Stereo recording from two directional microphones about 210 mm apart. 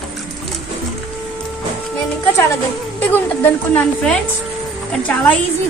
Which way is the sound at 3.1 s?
10° left (ahead or behind).